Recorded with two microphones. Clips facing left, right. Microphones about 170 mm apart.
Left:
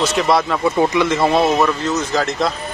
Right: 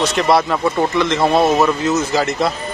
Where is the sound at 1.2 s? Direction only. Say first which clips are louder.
Right 3 dB; centre (ahead or behind).